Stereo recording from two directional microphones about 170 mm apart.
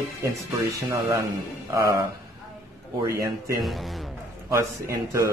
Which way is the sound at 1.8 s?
20° right (ahead or behind).